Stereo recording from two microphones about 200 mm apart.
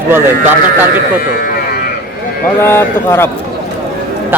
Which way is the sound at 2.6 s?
10° left (ahead or behind).